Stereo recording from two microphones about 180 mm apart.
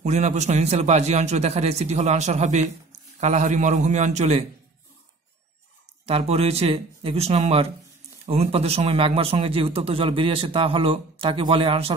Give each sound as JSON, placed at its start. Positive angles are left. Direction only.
{"t": 0.0, "sound": "a man's voice", "side_deg": -40}
{"t": 6.0, "sound": "a man's voice", "side_deg": -35}